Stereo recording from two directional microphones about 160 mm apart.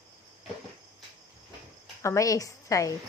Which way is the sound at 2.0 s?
20° left (ahead or behind).